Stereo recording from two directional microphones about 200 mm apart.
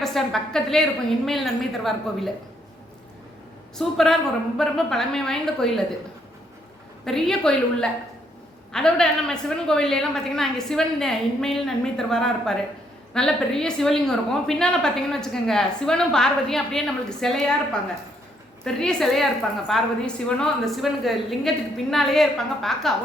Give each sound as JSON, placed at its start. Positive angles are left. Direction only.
{"t": 0.0, "sound": "a woman's voice", "side_deg": 0}
{"t": 3.8, "sound": "a woman's voice", "side_deg": 0}
{"t": 7.0, "sound": "a woman's voice", "side_deg": 0}